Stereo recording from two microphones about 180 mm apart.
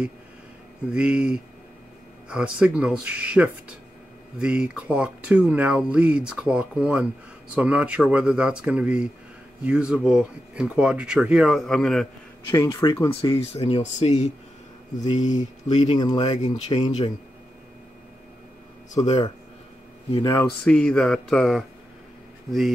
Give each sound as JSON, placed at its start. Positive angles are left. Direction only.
{"t": 0.8, "sound": "speech", "side_deg": -5}
{"t": 12.4, "sound": "speech", "side_deg": 15}
{"t": 13.1, "sound": "speech", "side_deg": 30}
{"t": 16.0, "sound": "speech", "side_deg": 25}
{"t": 16.3, "sound": "speech", "side_deg": 40}
{"t": 16.7, "sound": "speech", "side_deg": 25}
{"t": 20.1, "sound": "speech", "side_deg": 30}
{"t": 20.6, "sound": "speech", "side_deg": 5}